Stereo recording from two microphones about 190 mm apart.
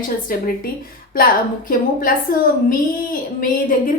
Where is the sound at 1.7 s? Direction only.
45° left (ahead or behind).